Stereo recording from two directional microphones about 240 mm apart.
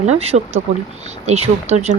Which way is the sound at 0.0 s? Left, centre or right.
Right.